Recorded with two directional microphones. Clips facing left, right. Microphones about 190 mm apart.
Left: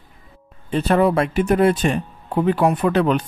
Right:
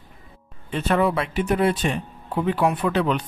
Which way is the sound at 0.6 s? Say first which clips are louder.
Left 4 dB; 35° left (ahead or behind).